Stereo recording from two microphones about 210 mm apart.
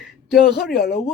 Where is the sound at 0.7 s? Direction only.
50° left (ahead or behind).